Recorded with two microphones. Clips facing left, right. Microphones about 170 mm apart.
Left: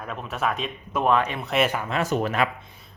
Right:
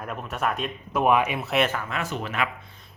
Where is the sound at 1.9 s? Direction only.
40° left (ahead or behind).